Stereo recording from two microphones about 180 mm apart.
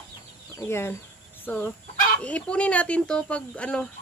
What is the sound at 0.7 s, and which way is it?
Speech, 15° left (ahead or behind).